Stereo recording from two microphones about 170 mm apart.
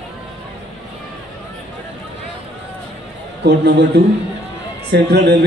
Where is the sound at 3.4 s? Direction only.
75° right (ahead or behind).